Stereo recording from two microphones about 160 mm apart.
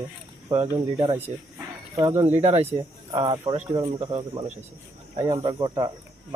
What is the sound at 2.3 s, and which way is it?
Speech, 40° right (ahead or behind).